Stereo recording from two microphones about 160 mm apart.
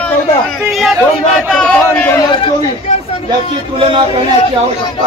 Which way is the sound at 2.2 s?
30° left (ahead or behind).